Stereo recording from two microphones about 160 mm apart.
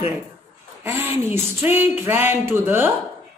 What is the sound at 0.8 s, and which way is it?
Speech, 15° right (ahead or behind).